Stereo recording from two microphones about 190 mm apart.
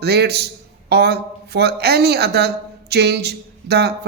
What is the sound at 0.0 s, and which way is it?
A man's voice, 60° right (ahead or behind).